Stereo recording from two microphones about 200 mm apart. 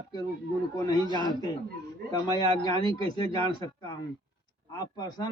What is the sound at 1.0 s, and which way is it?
Speech, 20° right (ahead or behind).